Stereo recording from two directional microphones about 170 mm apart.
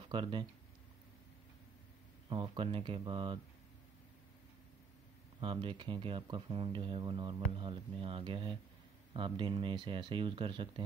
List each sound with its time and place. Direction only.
0.1 s speech: 30° right (ahead or behind)
2.2 s speech: 30° right (ahead or behind)
5.4 s speech: 30° right (ahead or behind)